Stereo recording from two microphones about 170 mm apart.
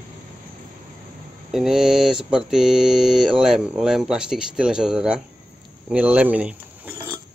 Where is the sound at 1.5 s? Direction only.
5° right (ahead or behind).